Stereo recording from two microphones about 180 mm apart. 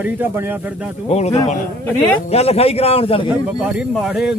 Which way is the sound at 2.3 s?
35° left (ahead or behind).